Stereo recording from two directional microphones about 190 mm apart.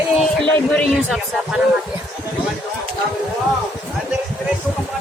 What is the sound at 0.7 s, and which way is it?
Speech, centre (ahead or behind).